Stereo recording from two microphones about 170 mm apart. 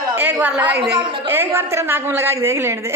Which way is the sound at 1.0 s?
30° right (ahead or behind).